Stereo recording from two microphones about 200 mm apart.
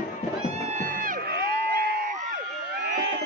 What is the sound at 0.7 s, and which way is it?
Crowd, 40° right (ahead or behind).